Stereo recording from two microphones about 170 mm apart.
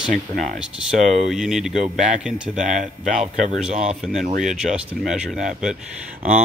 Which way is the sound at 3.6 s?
5° right (ahead or behind).